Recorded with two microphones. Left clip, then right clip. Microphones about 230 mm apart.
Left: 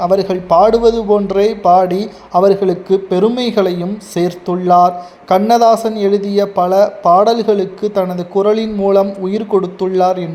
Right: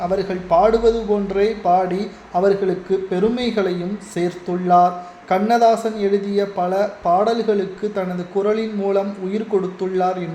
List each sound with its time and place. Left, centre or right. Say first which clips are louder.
0.0 s a man's voice: left 8 dB; left